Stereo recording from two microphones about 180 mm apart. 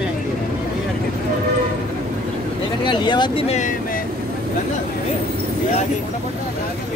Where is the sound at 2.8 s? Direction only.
25° left (ahead or behind).